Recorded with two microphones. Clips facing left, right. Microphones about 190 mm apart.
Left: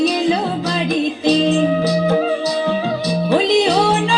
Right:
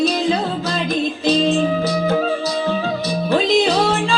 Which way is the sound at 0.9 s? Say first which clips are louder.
Left 2 dB; 15° left (ahead or behind).